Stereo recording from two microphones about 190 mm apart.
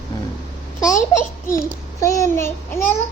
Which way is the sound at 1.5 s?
15° left (ahead or behind).